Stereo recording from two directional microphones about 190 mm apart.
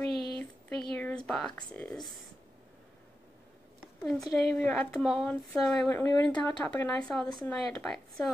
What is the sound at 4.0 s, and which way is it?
Speech, centre (ahead or behind).